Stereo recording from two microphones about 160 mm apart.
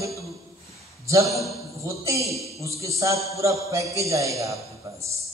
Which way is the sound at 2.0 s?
20° right (ahead or behind).